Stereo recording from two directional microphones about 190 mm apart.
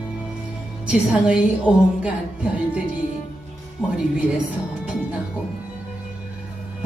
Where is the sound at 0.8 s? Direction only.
5° right (ahead or behind).